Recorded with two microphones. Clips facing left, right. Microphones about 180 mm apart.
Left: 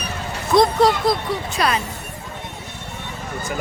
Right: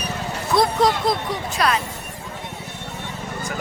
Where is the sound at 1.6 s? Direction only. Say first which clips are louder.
Even; centre (ahead or behind).